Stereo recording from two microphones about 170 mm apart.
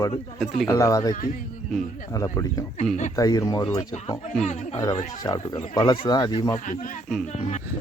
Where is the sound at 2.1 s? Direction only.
20° left (ahead or behind).